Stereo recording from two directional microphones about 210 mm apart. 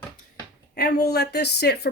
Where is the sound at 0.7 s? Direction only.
45° left (ahead or behind).